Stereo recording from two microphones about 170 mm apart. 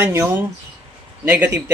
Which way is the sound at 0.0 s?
15° right (ahead or behind).